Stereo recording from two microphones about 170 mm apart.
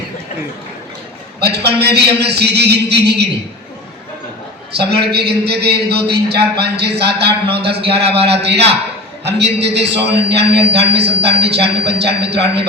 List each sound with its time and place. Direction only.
1.4 s a man's voice: 75° right (ahead or behind)
4.7 s a man's voice: 75° right (ahead or behind)
7.4 s a man's voice: 35° right (ahead or behind)
8.3 s a man's voice: 80° right